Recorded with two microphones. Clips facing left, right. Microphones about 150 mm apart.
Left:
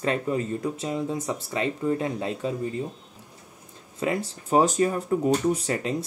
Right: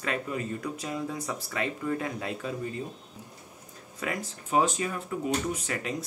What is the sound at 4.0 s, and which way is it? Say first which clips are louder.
Speech: left 7 dB; 30° left (ahead or behind).